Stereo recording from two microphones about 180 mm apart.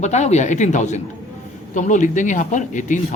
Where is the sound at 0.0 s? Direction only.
40° left (ahead or behind).